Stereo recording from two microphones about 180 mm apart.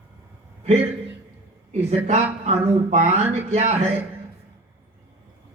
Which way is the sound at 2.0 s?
40° right (ahead or behind).